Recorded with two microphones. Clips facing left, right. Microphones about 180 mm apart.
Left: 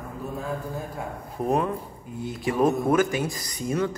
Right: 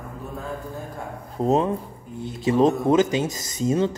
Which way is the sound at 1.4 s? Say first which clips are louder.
Right 4 dB; 25° right (ahead or behind).